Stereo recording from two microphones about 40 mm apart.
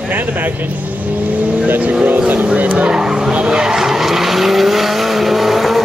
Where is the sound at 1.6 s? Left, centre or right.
Right.